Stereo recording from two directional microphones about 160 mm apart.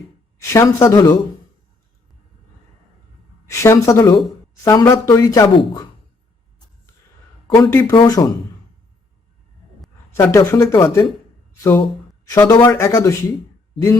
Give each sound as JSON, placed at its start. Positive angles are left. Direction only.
{"t": 0.4, "sound": "speech", "side_deg": 20}
{"t": 3.4, "sound": "speech", "side_deg": 15}
{"t": 7.4, "sound": "a sound", "side_deg": 25}
{"t": 7.7, "sound": "speech", "side_deg": 15}
{"t": 7.9, "sound": "speech", "side_deg": 25}
{"t": 10.3, "sound": "speech", "side_deg": 15}